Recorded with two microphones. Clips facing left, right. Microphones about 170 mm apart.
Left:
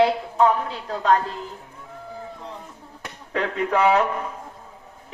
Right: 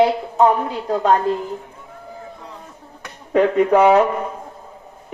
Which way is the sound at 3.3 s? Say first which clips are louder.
Right 9 dB; 45° right (ahead or behind).